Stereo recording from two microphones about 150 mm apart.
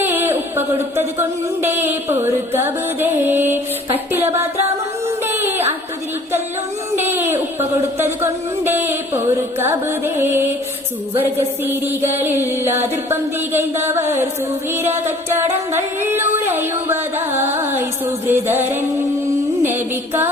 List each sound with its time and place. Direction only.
0.0 s speech: 15° right (ahead or behind)
5.0 s music: 15° right (ahead or behind)
6.9 s speech: 15° right (ahead or behind)